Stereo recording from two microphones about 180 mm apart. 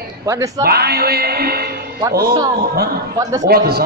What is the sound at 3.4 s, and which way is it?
Speech, 60° right (ahead or behind).